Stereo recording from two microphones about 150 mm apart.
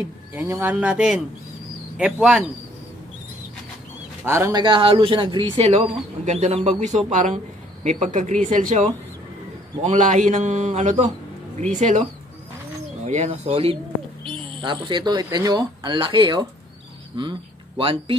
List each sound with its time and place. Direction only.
0.3 s speech: 15° right (ahead or behind)
4.2 s a man's voice: 15° right (ahead or behind); by 13.7 s 40° right (ahead or behind)
14.6 s a man's voice: 30° right (ahead or behind)